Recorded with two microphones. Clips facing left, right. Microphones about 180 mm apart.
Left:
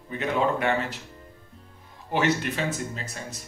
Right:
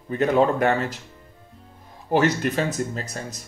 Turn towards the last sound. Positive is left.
turn(degrees=-40)  # may be behind; listen again after turning